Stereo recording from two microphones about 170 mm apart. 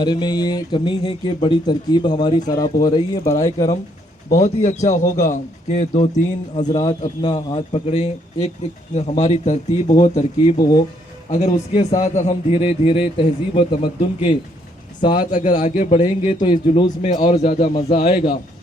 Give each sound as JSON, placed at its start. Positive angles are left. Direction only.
{"t": 0.0, "sound": "speech", "side_deg": 25}
{"t": 4.3, "sound": "speech", "side_deg": 45}
{"t": 7.0, "sound": "speech", "side_deg": 30}
{"t": 15.3, "sound": "speech", "side_deg": 50}
{"t": 16.2, "sound": "speech", "side_deg": 30}
{"t": 17.2, "sound": "speech", "side_deg": 40}